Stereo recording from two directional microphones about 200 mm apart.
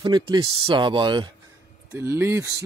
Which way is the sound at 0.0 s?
20° right (ahead or behind).